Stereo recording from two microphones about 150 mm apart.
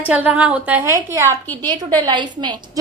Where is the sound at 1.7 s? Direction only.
30° right (ahead or behind).